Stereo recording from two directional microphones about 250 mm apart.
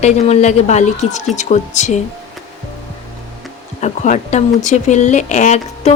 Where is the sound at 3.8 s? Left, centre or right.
Left.